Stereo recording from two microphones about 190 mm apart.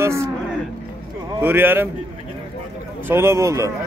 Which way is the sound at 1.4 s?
10° right (ahead or behind).